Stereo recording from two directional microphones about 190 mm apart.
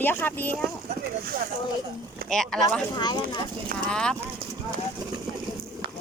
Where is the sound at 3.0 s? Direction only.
20° left (ahead or behind).